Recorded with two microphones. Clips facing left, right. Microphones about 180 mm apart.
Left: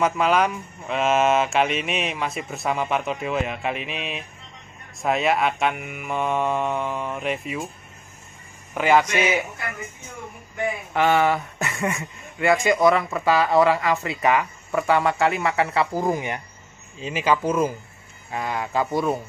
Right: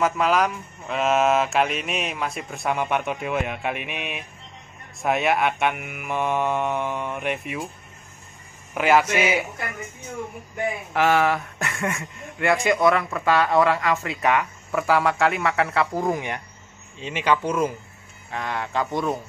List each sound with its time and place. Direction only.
0.0 s speech: centre (ahead or behind)
3.7 s a sound: 60° right (ahead or behind)
5.0 s speech: centre (ahead or behind)
8.7 s speech: 5° right (ahead or behind)
10.9 s speech: centre (ahead or behind)